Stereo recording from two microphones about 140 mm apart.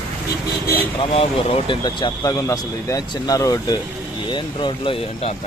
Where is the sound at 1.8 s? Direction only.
25° left (ahead or behind).